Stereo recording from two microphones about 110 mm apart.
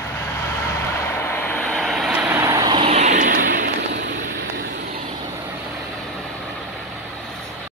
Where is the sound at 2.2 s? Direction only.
15° right (ahead or behind).